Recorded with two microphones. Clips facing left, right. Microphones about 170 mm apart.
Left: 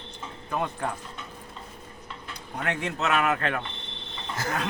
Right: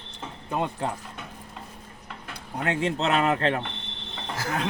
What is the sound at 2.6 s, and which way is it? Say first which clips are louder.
Speech: right 3 dB; 30° right (ahead or behind).